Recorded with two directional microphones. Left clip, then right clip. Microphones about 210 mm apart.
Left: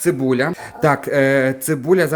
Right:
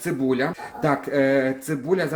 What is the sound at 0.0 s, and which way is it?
Speech, 55° left (ahead or behind).